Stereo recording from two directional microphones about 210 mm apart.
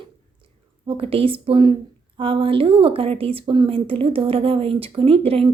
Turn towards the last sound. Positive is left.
turn(degrees=-25)  # may be behind; listen again after turning